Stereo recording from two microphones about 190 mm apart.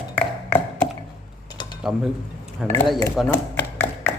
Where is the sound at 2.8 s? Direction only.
Centre (ahead or behind).